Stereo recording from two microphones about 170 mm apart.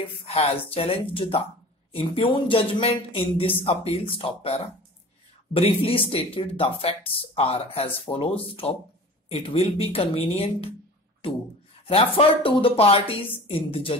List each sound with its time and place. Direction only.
0.0 s speech: 35° left (ahead or behind)
11.8 s speech: 35° left (ahead or behind)